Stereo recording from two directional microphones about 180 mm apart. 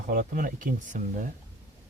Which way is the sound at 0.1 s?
55° right (ahead or behind).